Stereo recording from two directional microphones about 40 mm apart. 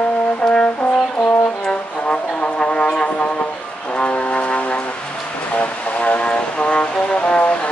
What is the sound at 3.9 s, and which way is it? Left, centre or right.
Vehicle, left.